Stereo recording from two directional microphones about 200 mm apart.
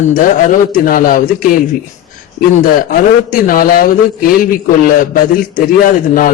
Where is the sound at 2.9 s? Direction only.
45° left (ahead or behind).